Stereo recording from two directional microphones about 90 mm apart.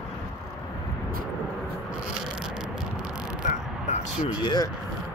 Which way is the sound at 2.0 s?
5° right (ahead or behind).